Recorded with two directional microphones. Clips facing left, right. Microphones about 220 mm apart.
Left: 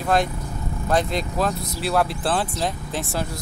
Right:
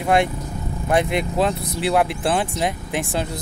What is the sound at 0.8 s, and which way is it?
Speech, 15° right (ahead or behind).